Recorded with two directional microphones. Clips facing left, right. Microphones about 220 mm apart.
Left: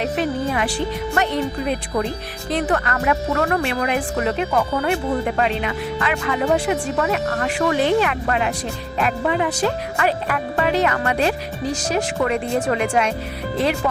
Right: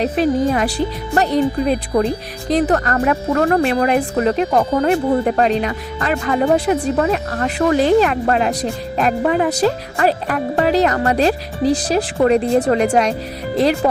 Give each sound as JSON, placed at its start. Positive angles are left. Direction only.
{"t": 0.0, "sound": "speech", "side_deg": -35}